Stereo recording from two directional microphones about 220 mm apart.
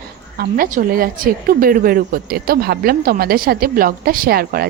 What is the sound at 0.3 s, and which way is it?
A woman's voice, 40° right (ahead or behind).